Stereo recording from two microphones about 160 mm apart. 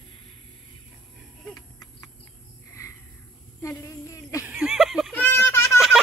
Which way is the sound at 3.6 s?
20° left (ahead or behind).